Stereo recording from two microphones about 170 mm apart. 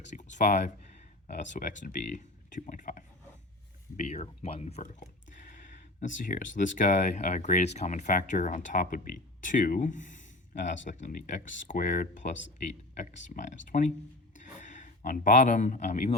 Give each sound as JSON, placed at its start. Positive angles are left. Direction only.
{"t": 0.1, "sound": "speech", "side_deg": 45}
{"t": 3.9, "sound": "speech", "side_deg": 40}
{"t": 13.7, "sound": "speech", "side_deg": 50}